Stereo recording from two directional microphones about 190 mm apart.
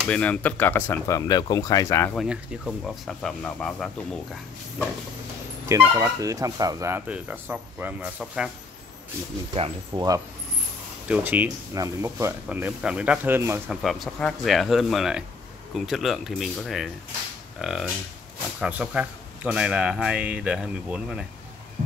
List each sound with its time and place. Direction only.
0.1 s speech: 5° left (ahead or behind)
2.1 s speech: centre (ahead or behind)
5.7 s speech: 15° right (ahead or behind)
9.6 s speech: 20° right (ahead or behind)
11.1 s speech: 10° right (ahead or behind)
13.7 s speech: centre (ahead or behind)